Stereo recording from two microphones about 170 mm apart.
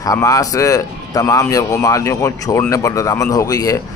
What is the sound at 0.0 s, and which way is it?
Speech, 20° left (ahead or behind).